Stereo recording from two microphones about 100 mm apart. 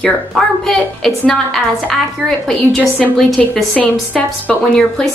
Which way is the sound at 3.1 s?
5° left (ahead or behind).